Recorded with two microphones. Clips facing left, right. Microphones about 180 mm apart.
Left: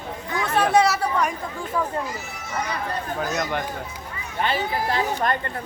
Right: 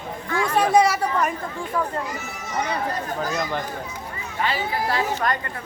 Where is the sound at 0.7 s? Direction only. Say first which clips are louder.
Right 1 dB; 10° right (ahead or behind).